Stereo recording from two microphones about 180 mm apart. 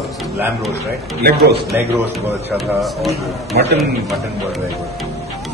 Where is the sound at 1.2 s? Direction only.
65° right (ahead or behind).